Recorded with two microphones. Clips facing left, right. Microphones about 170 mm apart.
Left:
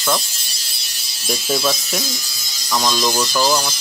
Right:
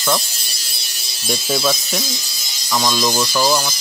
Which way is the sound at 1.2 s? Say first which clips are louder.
Right 1 dB; centre (ahead or behind).